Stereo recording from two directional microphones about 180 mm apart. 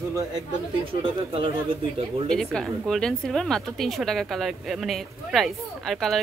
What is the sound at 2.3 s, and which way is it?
Speech, 5° left (ahead or behind).